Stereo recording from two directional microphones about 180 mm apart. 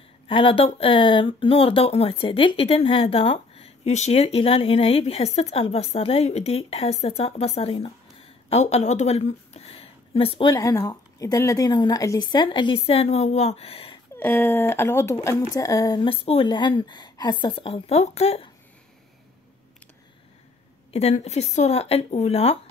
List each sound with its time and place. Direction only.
0.3 s speech: 30° left (ahead or behind)
14.1 s speech: 10° left (ahead or behind); by 18.5 s 35° left (ahead or behind)
20.9 s speech: 35° left (ahead or behind)